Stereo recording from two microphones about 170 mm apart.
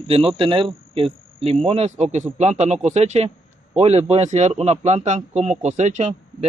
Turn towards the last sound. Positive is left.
turn(degrees=-40)  # may be behind; listen again after turning